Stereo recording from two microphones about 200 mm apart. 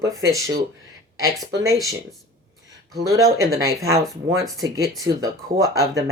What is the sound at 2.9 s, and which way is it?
Speech, 15° right (ahead or behind).